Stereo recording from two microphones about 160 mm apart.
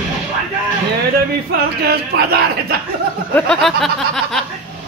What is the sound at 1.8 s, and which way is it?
Speech, 80° right.